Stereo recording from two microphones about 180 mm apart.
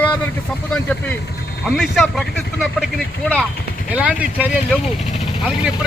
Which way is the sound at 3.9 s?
10° right (ahead or behind).